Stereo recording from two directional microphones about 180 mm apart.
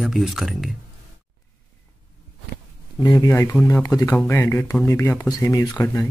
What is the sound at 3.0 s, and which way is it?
Speech, 20° left (ahead or behind).